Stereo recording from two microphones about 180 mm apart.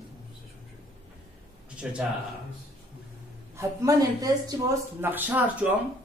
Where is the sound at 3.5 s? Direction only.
20° right (ahead or behind).